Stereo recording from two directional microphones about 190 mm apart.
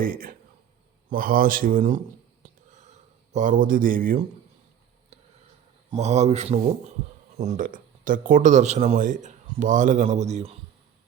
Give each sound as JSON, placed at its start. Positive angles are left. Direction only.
{"t": 0.0, "sound": "speech", "side_deg": -50}
{"t": 2.4, "sound": "a sound", "side_deg": -40}
{"t": 5.9, "sound": "speech", "side_deg": -35}